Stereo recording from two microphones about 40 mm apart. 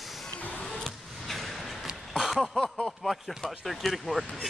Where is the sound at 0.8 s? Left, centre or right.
Centre.